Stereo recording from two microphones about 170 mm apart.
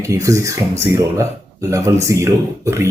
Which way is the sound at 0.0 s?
20° right (ahead or behind).